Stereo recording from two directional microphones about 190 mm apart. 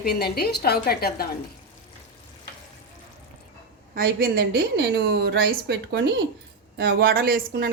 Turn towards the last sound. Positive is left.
turn(degrees=-50)  # may be behind; listen again after turning